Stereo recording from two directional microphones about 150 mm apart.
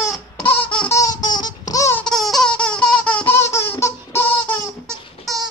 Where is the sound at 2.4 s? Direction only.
5° left (ahead or behind).